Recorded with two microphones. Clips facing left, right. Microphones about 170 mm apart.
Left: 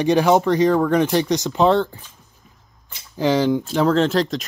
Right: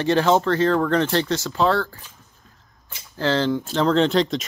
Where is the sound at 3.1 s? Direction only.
15° left (ahead or behind).